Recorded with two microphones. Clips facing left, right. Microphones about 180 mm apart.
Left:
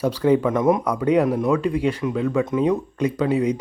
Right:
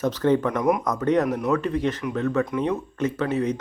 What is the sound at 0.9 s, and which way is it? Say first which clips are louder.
Speech: left 3 dB; 10° left (ahead or behind).